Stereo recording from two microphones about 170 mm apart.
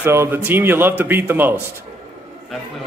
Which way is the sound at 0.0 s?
15° right (ahead or behind).